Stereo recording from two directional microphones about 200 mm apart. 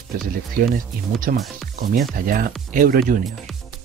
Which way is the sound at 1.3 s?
50° right (ahead or behind).